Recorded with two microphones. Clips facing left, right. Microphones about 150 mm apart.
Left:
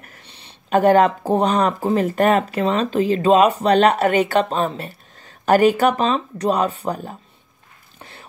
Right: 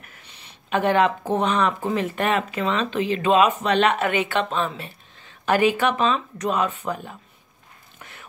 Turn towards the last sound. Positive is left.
turn(degrees=40)  # may be behind; listen again after turning